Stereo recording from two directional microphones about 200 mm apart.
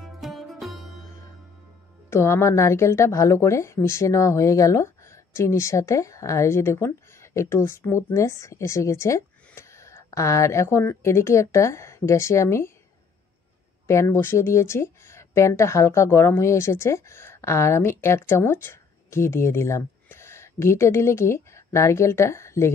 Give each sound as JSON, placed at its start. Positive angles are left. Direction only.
{"t": 0.0, "sound": "music", "side_deg": 0}
{"t": 2.0, "sound": "a woman's voice", "side_deg": 15}
{"t": 13.8, "sound": "speech", "side_deg": 15}